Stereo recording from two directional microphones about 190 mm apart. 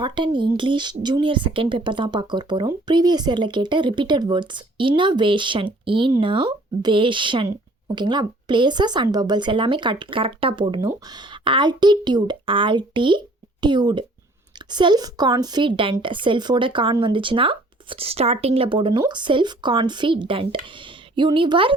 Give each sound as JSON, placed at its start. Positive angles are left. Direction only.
{"t": 0.0, "sound": "a woman's voice", "side_deg": -25}